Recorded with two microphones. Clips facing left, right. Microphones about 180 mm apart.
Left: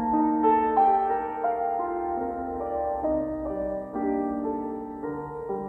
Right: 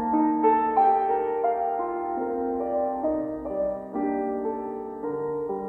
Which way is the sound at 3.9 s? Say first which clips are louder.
Left 1 dB; 5° right (ahead or behind).